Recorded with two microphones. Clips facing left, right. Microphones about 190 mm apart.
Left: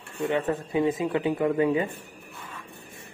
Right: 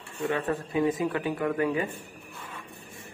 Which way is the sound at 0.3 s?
20° left (ahead or behind).